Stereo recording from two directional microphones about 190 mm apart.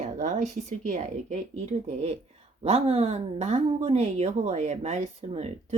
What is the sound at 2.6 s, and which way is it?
Speech, 30° right (ahead or behind).